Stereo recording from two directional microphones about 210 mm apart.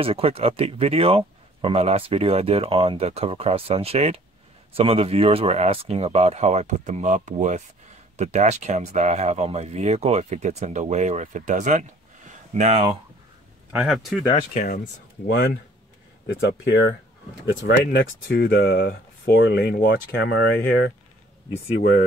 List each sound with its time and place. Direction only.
0.0 s speech: 25° right (ahead or behind)
12.3 s a sound: 35° right (ahead or behind)
13.7 s speech: 5° right (ahead or behind)
14.5 s speech: 35° left (ahead or behind)
15.2 s speech: 50° left (ahead or behind)